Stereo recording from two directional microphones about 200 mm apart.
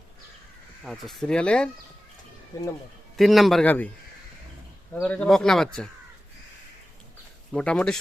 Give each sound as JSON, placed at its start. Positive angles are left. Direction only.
{"t": 0.9, "sound": "speech", "side_deg": 0}
{"t": 2.5, "sound": "speech", "side_deg": 15}
{"t": 3.2, "sound": "speech", "side_deg": 0}
{"t": 4.9, "sound": "speech", "side_deg": 5}
{"t": 7.5, "sound": "speech", "side_deg": 5}